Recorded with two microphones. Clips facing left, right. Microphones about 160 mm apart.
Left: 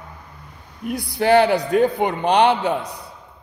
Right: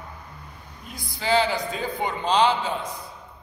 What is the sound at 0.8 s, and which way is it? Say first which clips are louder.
Speech: left 9 dB; 70° left (ahead or behind).